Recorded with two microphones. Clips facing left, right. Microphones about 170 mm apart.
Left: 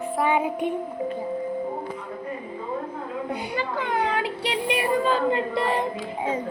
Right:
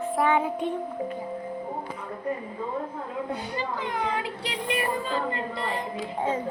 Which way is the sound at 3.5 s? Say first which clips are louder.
Left 6 dB; 65° left (ahead or behind).